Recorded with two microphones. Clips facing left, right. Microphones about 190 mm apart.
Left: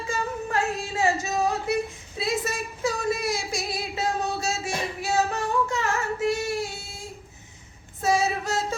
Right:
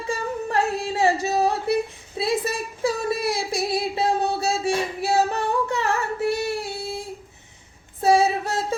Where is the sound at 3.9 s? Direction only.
35° right (ahead or behind).